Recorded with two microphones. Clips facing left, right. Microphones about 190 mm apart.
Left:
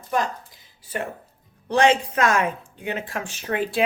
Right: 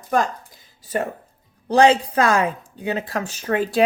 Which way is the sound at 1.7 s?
35° right (ahead or behind).